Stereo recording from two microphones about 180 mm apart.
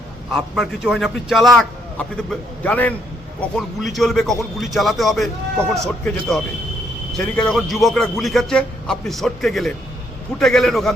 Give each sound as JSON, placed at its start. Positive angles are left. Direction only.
{"t": 0.3, "sound": "speech", "side_deg": 0}